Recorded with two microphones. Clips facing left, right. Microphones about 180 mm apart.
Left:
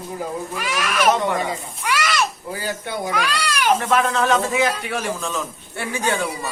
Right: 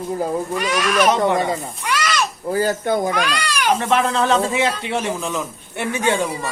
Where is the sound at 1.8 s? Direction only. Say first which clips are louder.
Even; 5° left (ahead or behind).